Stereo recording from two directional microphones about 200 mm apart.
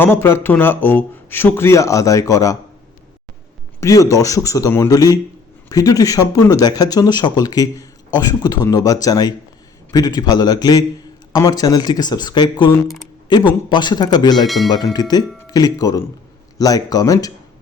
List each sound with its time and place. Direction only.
0.0 s a man's voice: 10° left (ahead or behind)
3.8 s a man's voice: 15° left (ahead or behind)
14.4 s speech: centre (ahead or behind)
14.9 s a man's voice: 20° left (ahead or behind)